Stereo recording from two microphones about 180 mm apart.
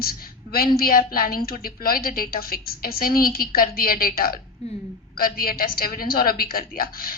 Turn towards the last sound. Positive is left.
turn(degrees=55)  # may be behind; listen again after turning